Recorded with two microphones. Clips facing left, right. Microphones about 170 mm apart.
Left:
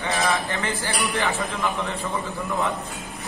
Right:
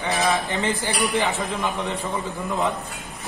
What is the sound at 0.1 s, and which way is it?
A man's voice, 20° right (ahead or behind).